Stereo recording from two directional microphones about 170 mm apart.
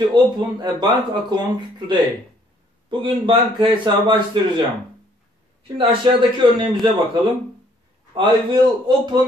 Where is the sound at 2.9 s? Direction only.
30° right (ahead or behind).